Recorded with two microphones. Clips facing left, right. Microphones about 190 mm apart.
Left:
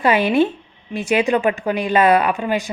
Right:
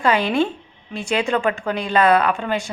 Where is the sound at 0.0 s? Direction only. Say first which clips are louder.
Left 3 dB; 20° left (ahead or behind).